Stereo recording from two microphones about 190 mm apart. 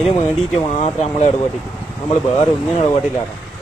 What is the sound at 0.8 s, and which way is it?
Speech, 35° left (ahead or behind).